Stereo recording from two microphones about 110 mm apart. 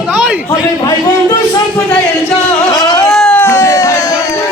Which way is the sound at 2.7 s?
35° left (ahead or behind).